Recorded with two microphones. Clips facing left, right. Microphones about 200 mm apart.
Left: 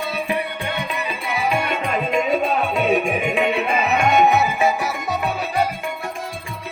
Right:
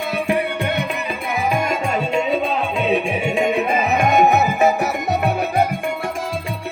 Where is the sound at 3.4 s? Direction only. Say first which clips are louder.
Right 2 dB; 45° right (ahead or behind).